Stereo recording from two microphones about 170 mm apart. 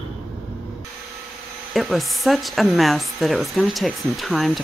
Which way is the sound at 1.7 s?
Centre (ahead or behind).